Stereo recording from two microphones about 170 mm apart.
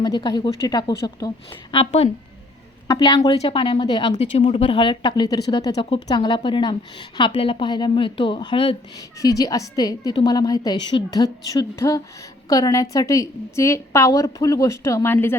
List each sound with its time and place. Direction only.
0.0 s speech: 25° left (ahead or behind)
2.8 s a woman's voice: 20° left (ahead or behind)
3.2 s speech: 40° left (ahead or behind)
4.1 s speech: 40° left (ahead or behind); by 15.4 s 15° left (ahead or behind)